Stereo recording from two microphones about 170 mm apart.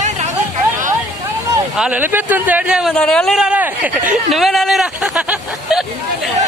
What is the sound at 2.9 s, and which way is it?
Speech, 5° left (ahead or behind).